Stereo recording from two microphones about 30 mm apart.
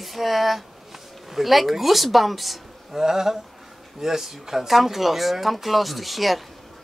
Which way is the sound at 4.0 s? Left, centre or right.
Centre.